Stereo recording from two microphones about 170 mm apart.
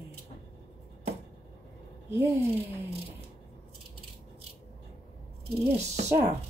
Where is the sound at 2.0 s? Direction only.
15° right (ahead or behind).